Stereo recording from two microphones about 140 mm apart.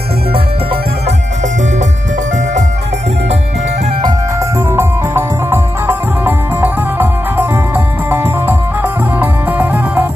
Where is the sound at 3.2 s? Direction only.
50° right (ahead or behind).